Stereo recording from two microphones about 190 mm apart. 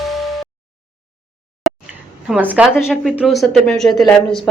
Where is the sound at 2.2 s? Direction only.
5° right (ahead or behind).